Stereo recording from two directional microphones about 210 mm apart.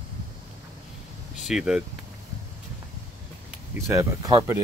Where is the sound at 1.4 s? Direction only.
Centre (ahead or behind).